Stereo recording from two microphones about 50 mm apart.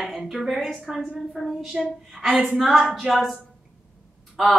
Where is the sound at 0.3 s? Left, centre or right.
Centre.